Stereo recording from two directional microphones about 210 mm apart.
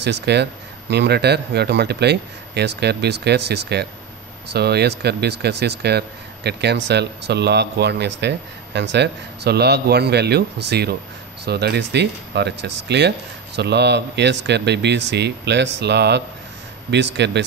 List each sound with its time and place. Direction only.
0.0 s speech: 55° right (ahead or behind)